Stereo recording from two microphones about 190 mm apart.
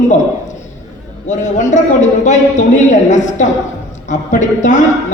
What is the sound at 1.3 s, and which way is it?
A woman's voice, 40° left (ahead or behind).